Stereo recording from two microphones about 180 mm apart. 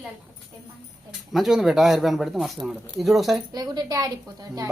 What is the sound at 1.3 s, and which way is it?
Speech, centre (ahead or behind).